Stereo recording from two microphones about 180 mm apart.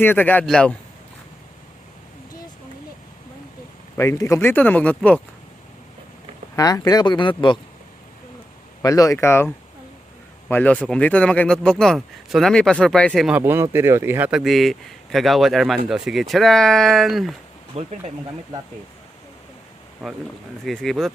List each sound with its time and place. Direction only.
0.0 s speech: 10° left (ahead or behind)
3.9 s speech: 15° left (ahead or behind)
6.6 s speech: 20° left (ahead or behind)
8.8 s speech: 20° left (ahead or behind)
10.5 s speech: 10° left (ahead or behind)
17.7 s speech: 35° right (ahead or behind)
20.0 s speech: centre (ahead or behind)